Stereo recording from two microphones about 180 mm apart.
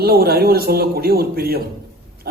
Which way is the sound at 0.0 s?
60° right (ahead or behind).